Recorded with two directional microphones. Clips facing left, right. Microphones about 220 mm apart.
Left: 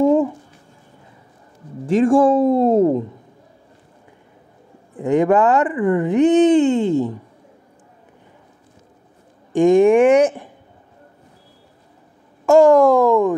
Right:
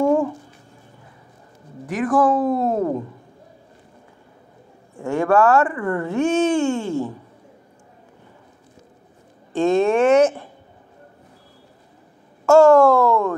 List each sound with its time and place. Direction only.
0.0 s a sound: 20° left (ahead or behind)
1.9 s speech: 25° left (ahead or behind)
4.9 s speech: 20° left (ahead or behind)
9.5 s speech: 15° left (ahead or behind)
12.4 s speech: 15° left (ahead or behind)